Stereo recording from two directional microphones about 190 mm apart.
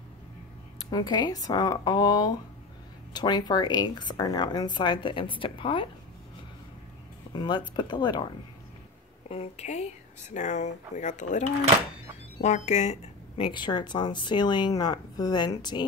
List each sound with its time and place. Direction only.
0.8 s speech: 20° left (ahead or behind)
7.3 s speech: 25° left (ahead or behind)
9.3 s speech: 35° left (ahead or behind)
13.5 s speech: 25° left (ahead or behind)